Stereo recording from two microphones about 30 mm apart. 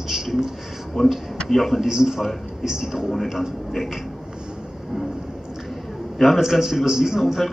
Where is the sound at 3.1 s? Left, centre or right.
Centre.